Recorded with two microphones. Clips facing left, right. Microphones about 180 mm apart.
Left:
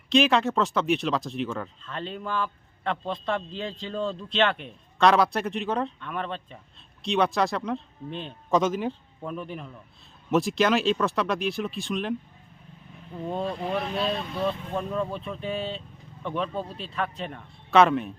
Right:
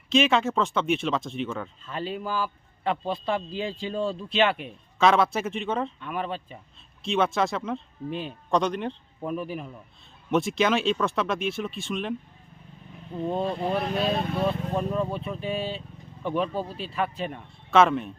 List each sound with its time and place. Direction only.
0.1 s a man's voice: centre (ahead or behind)
13.3 s speech: 25° right (ahead or behind); by 14.3 s 50° right (ahead or behind)
14.8 s speech: 5° right (ahead or behind)